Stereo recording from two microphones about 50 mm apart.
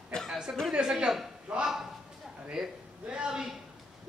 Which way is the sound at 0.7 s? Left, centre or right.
Centre.